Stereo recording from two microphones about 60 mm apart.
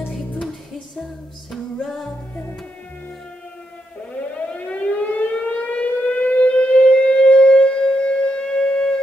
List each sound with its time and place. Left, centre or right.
1.5 s music: centre
4.1 s civil defense siren: left